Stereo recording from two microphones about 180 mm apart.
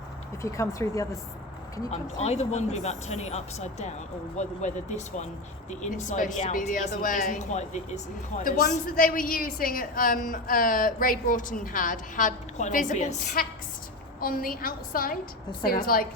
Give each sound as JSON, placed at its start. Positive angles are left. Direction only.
{"t": 0.4, "sound": "speech", "side_deg": 15}
{"t": 1.9, "sound": "a woman's voice", "side_deg": 35}